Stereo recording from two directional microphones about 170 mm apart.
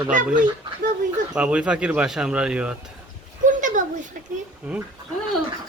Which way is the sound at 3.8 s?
50° right (ahead or behind).